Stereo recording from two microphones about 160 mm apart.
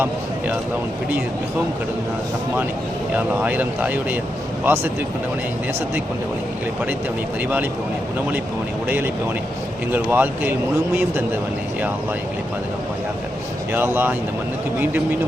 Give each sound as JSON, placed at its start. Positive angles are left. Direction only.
{"t": 3.2, "sound": "speech", "side_deg": -10}
{"t": 9.9, "sound": "speech", "side_deg": -10}
{"t": 13.7, "sound": "speech", "side_deg": -15}